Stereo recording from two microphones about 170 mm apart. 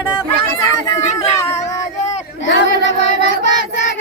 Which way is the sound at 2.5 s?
90° left.